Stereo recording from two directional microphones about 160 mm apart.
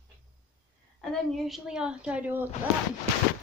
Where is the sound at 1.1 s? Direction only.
Centre (ahead or behind).